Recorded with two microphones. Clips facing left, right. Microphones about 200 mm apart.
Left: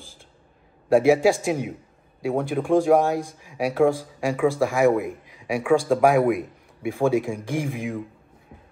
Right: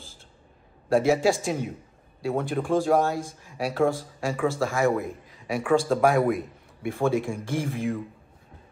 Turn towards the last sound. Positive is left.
turn(degrees=10)  # may be behind; listen again after turning